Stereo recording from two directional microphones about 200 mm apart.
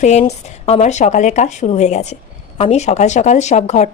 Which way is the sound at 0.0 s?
35° left (ahead or behind).